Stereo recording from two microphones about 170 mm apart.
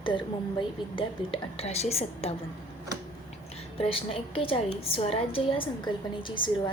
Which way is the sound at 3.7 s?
35° left (ahead or behind).